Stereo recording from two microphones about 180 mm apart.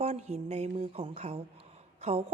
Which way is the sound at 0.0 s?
40° right (ahead or behind).